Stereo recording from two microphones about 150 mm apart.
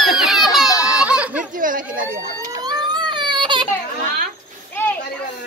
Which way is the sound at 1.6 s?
65° right (ahead or behind).